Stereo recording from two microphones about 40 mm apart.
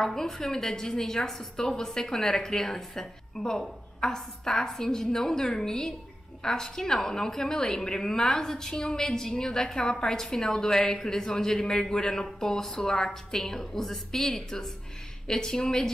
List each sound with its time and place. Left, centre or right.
0.0 s a woman's voice: centre